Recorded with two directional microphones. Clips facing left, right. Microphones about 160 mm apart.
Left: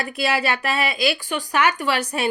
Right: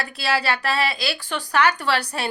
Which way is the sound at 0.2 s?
20° left (ahead or behind).